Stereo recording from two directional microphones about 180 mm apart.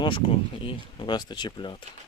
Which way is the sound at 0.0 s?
30° left (ahead or behind).